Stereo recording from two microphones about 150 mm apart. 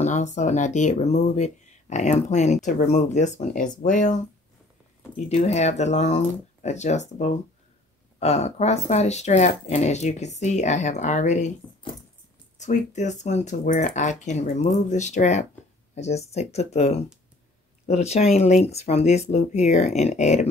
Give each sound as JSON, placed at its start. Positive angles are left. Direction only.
{"t": 0.0, "sound": "speech", "side_deg": 55}
{"t": 5.3, "sound": "speech", "side_deg": 50}
{"t": 12.5, "sound": "speech", "side_deg": 55}